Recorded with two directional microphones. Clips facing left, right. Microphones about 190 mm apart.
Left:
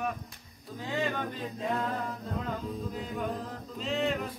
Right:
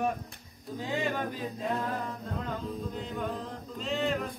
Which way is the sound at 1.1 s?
5° right (ahead or behind).